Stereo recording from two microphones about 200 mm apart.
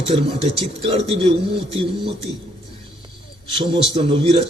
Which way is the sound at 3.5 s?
25° right (ahead or behind).